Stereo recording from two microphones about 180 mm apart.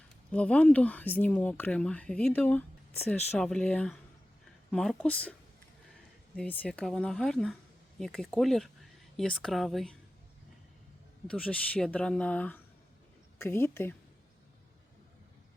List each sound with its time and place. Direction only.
0.3 s speech: 5° left (ahead or behind)
6.3 s speech: 5° left (ahead or behind)
11.3 s speech: 5° left (ahead or behind)